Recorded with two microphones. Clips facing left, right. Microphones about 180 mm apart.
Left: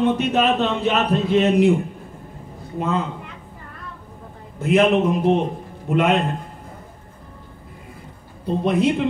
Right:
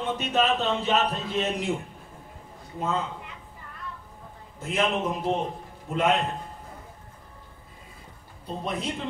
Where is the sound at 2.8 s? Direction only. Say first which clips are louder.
Left 6 dB; 70° left (ahead or behind).